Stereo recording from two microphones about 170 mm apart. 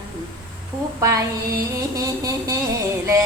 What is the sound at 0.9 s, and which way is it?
Female singing, 15° right (ahead or behind).